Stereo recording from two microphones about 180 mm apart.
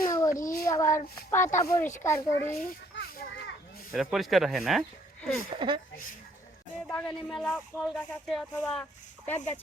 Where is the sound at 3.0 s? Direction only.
60° left (ahead or behind).